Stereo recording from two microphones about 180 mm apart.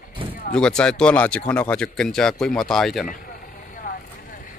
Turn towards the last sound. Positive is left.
turn(degrees=50)  # may be behind; listen again after turning